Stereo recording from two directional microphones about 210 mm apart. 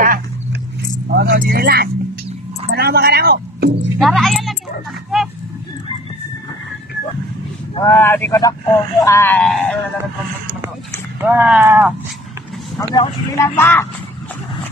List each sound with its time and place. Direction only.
1.1 s speech: 50° right (ahead or behind)
4.0 s a child's voice: centre (ahead or behind)
5.1 s a sound: centre (ahead or behind)
7.8 s speech: 10° left (ahead or behind)
11.2 s speech: 5° right (ahead or behind)
12.7 s speech: 10° left (ahead or behind)